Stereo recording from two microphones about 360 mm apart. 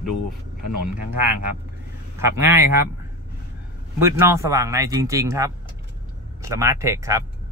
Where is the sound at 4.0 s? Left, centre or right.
Centre.